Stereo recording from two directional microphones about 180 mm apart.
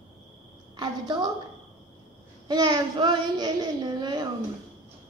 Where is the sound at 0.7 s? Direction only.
25° right (ahead or behind).